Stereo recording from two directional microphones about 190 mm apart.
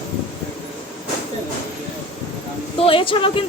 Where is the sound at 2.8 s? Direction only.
30° left (ahead or behind).